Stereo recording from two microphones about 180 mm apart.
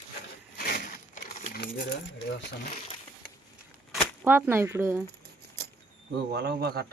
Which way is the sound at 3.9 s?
10° right (ahead or behind).